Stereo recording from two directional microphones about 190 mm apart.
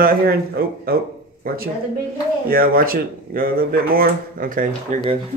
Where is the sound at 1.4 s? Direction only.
50° right (ahead or behind).